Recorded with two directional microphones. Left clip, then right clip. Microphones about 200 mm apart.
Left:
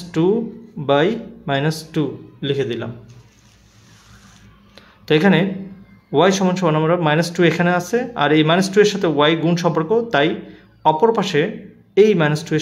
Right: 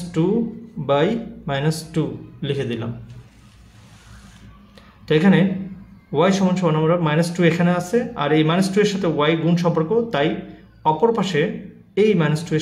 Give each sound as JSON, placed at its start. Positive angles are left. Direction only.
{"t": 0.2, "sound": "speech", "side_deg": 30}
{"t": 5.0, "sound": "a man's voice", "side_deg": 30}